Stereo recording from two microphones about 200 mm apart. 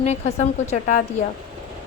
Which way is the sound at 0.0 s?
35° left (ahead or behind).